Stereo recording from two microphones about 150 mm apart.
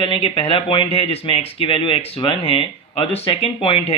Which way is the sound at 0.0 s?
35° left (ahead or behind).